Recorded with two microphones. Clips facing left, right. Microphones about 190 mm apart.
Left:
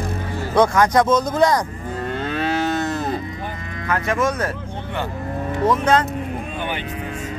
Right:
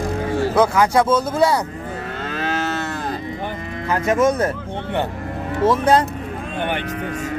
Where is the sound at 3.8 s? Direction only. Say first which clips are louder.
Right 4 dB; 20° right (ahead or behind).